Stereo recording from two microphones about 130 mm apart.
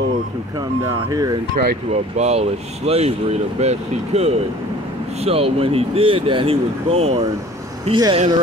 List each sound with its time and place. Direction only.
0.9 s speech: 30° right (ahead or behind)
1.9 s speech: 55° right (ahead or behind)
7.9 s speech: 40° right (ahead or behind)